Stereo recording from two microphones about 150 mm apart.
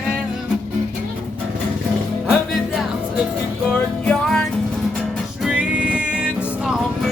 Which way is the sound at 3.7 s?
5° left (ahead or behind).